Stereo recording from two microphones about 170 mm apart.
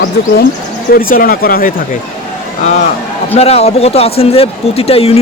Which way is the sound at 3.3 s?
35° left (ahead or behind).